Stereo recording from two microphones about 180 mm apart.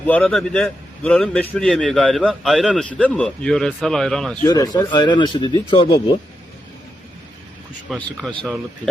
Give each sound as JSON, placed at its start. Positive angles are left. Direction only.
{"t": 0.1, "sound": "a man's voice", "side_deg": 10}
{"t": 4.4, "sound": "speech", "side_deg": 20}
{"t": 7.9, "sound": "a man's voice", "side_deg": 5}